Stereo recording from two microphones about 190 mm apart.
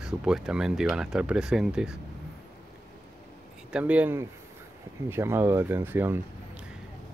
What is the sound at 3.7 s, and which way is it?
Speech, 5° right (ahead or behind).